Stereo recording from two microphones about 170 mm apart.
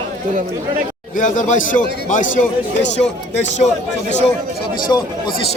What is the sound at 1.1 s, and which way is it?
Speech, 50° left (ahead or behind).